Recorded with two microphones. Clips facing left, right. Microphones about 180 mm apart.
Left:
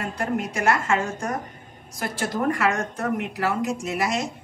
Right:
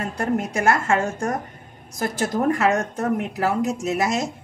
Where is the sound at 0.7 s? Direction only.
45° right (ahead or behind).